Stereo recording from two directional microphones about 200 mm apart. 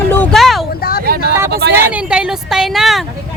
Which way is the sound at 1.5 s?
55° right (ahead or behind).